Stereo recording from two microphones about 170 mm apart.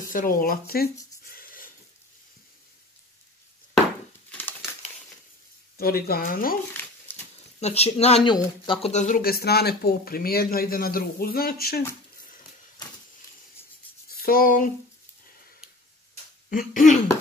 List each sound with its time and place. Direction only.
0.1 s speech: 55° left (ahead or behind)
1.3 s a sound: 60° left (ahead or behind)
4.3 s crushing: 10° left (ahead or behind)
5.8 s speech: 60° left (ahead or behind)
7.1 s a sound: 10° left (ahead or behind)
7.6 s speech: 40° left (ahead or behind)
8.9 s speech: 50° left (ahead or behind)
14.0 s a sound: 60° left (ahead or behind)
16.4 s speech: 50° left (ahead or behind)